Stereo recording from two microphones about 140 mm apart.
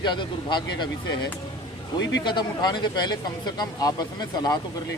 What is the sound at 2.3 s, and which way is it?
Speech, 30° left (ahead or behind).